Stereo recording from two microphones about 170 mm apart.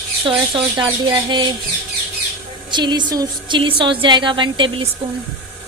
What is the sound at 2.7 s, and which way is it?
Speech, 25° right (ahead or behind).